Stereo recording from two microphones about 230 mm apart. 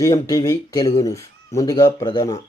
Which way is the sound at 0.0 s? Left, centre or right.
Centre.